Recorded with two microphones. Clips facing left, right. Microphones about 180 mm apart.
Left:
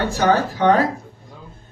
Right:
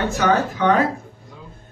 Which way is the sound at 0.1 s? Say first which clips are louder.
Left 1 dB; 35° left (ahead or behind).